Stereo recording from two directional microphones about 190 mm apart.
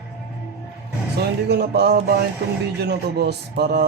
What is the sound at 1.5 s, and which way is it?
A man's voice, 60° right (ahead or behind).